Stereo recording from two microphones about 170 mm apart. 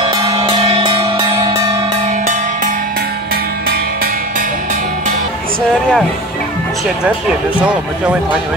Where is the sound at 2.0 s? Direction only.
45° right (ahead or behind).